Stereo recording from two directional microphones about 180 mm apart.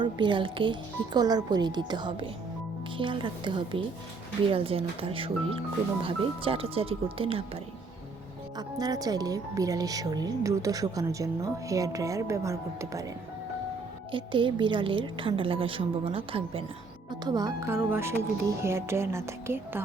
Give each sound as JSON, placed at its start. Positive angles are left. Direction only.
{"t": 0.0, "sound": "speech", "side_deg": -25}
{"t": 14.1, "sound": "speech", "side_deg": -25}